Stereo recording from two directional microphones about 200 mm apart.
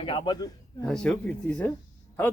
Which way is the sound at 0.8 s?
5° left (ahead or behind).